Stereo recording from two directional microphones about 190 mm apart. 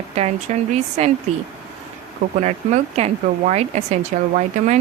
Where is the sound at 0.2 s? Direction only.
35° right (ahead or behind).